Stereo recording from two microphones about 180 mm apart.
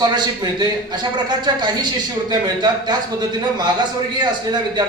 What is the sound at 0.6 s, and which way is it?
A man's voice, 25° right (ahead or behind).